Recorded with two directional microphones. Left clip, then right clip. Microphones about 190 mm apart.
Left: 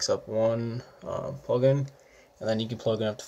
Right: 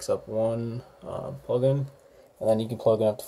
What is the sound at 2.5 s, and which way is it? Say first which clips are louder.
Speech: right 5 dB; 45° right (ahead or behind).